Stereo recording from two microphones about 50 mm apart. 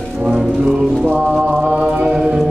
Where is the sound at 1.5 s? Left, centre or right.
Right.